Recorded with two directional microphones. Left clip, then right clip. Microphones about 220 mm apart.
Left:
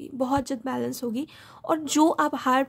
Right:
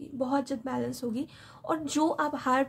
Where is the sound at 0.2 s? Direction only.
40° left (ahead or behind).